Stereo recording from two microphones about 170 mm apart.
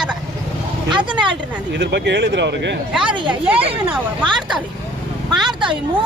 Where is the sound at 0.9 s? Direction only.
25° right (ahead or behind).